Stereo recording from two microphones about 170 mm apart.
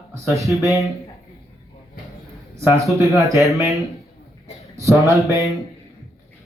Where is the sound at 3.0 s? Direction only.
Centre (ahead or behind).